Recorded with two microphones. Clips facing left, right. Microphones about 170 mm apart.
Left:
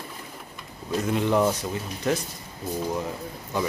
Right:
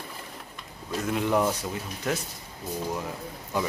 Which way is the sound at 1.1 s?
5° right (ahead or behind).